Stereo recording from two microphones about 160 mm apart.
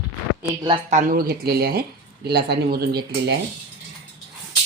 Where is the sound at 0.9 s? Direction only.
55° right (ahead or behind); by 3.3 s 85° right.